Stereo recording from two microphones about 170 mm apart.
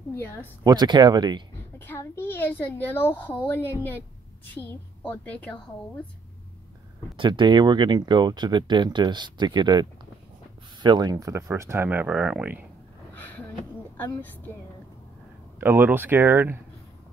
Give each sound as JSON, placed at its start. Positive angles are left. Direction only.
{"t": 0.1, "sound": "a woman's voice", "side_deg": 15}
{"t": 0.7, "sound": "speech", "side_deg": -25}
{"t": 1.8, "sound": "a child's voice", "side_deg": 15}
{"t": 7.2, "sound": "speech", "side_deg": -30}
{"t": 13.9, "sound": "a child's voice", "side_deg": 10}
{"t": 15.6, "sound": "speech", "side_deg": -15}